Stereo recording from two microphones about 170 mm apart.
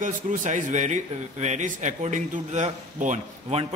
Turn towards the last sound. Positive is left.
turn(degrees=-35)  # may be behind; listen again after turning